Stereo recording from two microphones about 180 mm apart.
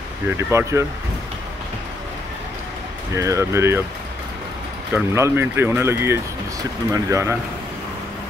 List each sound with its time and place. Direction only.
0.3 s speech: 15° right (ahead or behind)
3.2 s speech: 15° right (ahead or behind)
4.9 s speech: 15° right (ahead or behind)